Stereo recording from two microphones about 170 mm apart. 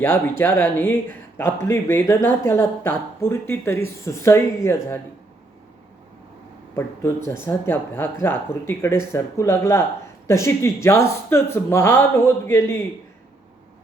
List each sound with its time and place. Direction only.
0.0 s speech: 10° left (ahead or behind)
7.3 s speech: 15° left (ahead or behind)